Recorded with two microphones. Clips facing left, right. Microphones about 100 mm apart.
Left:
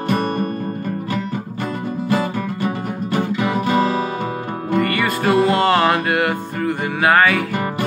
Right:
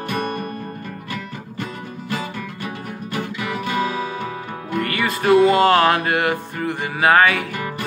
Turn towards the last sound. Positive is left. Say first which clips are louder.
# even
turn(degrees=0)  # may be behind; listen again after turning